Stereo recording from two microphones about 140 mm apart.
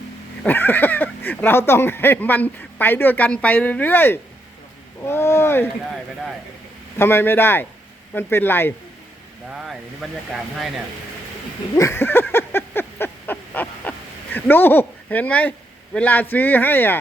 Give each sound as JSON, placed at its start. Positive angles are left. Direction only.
{"t": 0.4, "sound": "speech", "side_deg": 15}
{"t": 6.9, "sound": "speech", "side_deg": 15}
{"t": 9.5, "sound": "speech", "side_deg": 0}
{"t": 11.8, "sound": "a sound", "side_deg": 20}
{"t": 14.3, "sound": "speech", "side_deg": 15}